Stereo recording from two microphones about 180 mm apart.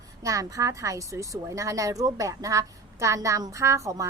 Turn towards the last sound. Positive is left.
turn(degrees=-15)  # may be behind; listen again after turning